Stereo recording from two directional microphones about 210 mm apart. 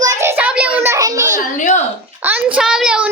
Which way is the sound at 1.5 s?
35° left (ahead or behind).